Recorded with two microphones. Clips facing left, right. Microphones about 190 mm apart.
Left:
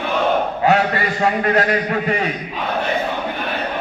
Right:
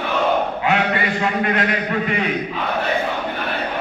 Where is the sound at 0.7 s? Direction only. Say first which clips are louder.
Left 4 dB; 40° left (ahead or behind).